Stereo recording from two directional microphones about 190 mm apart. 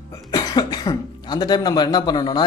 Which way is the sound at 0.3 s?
20° left (ahead or behind).